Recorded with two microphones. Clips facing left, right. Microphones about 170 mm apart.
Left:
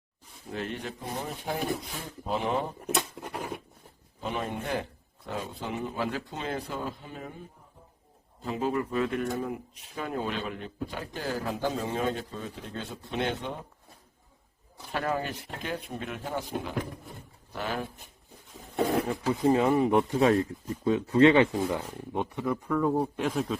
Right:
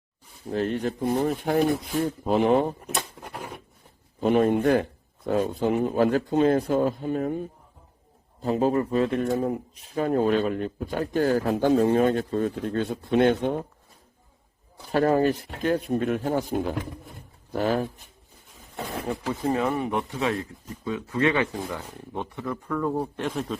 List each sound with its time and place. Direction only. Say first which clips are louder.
0.5 s speech: right 9 dB; 40° right (ahead or behind)
4.2 s speech: right 13 dB; 50° right (ahead or behind)
8.4 s speech: right 7 dB; 40° right (ahead or behind)
14.9 s speech: right 10 dB; 40° right (ahead or behind)
19.5 s speech: left 3 dB; 25° left (ahead or behind)
21.1 s speech: left 4 dB; 25° left (ahead or behind); by 23.6 s 5° left (ahead or behind)